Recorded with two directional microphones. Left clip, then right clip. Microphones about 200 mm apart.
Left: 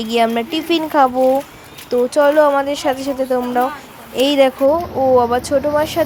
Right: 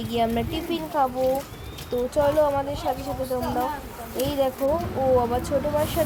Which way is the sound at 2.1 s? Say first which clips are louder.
Left 8 dB; 20° left (ahead or behind).